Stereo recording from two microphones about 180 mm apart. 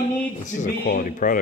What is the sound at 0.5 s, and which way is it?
Speech, 45° left (ahead or behind).